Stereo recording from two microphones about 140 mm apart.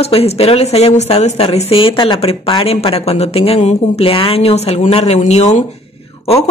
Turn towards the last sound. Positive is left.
turn(degrees=45)  # may be behind; listen again after turning